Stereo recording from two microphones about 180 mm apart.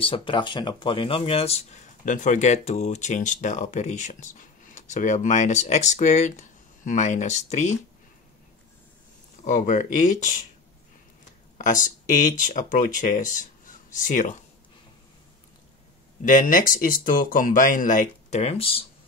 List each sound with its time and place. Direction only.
0.0 s speech: 30° left (ahead or behind)
9.4 s speech: 45° left (ahead or behind)
11.5 s speech: 45° left (ahead or behind)
16.2 s speech: 45° left (ahead or behind)